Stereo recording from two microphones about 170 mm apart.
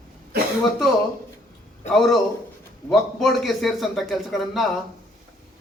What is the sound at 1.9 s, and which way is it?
A man's voice, centre (ahead or behind).